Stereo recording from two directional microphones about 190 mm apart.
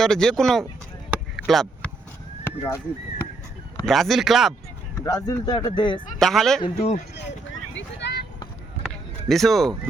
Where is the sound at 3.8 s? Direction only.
Centre (ahead or behind).